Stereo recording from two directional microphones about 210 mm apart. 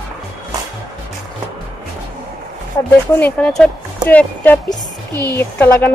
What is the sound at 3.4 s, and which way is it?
A woman's voice, 5° left (ahead or behind).